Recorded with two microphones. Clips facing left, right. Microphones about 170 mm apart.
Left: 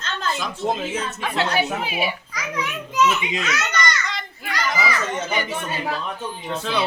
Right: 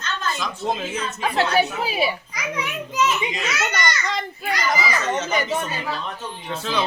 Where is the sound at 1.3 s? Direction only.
40° right (ahead or behind).